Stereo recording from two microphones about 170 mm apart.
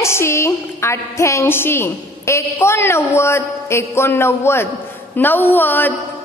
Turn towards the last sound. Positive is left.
turn(degrees=10)  # may be behind; listen again after turning